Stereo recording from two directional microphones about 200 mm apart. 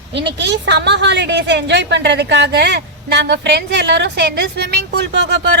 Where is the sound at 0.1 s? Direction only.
60° right (ahead or behind).